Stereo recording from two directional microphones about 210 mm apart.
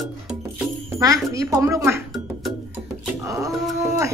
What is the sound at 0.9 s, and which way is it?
Speech, 15° right (ahead or behind).